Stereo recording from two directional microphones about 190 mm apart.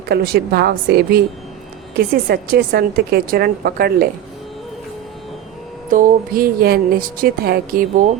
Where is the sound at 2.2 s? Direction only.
50° right (ahead or behind).